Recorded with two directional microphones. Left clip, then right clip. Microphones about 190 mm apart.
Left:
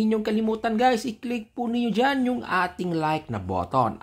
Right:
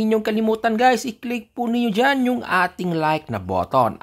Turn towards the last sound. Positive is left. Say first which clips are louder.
# right 5 dB
turn(degrees=-25)  # may be behind; listen again after turning